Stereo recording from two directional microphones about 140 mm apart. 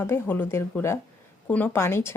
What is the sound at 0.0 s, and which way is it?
Speech, 15° left (ahead or behind).